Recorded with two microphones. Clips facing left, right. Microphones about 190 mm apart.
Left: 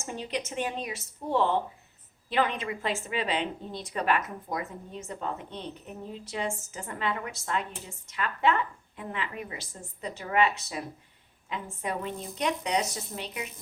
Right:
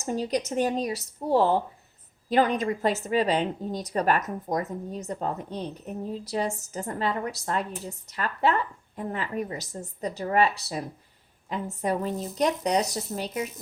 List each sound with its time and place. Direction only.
0.0 s a woman's voice: 40° right (ahead or behind)